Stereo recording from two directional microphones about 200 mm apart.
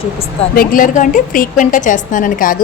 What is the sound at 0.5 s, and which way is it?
A woman's voice, 45° left (ahead or behind).